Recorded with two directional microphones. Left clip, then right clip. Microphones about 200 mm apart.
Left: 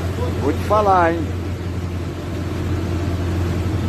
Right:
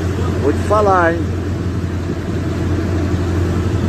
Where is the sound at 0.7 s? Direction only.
15° left (ahead or behind).